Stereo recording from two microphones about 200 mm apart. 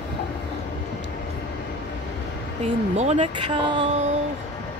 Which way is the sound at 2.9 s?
35° right (ahead or behind).